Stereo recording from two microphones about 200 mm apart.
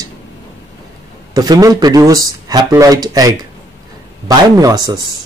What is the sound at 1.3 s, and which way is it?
Speech, 20° right (ahead or behind).